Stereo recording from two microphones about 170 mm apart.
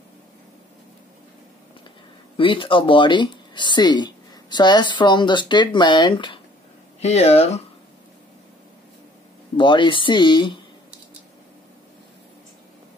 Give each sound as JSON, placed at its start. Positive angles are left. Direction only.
{"t": 2.3, "sound": "a woman's voice", "side_deg": 30}
{"t": 9.6, "sound": "a woman's voice", "side_deg": 30}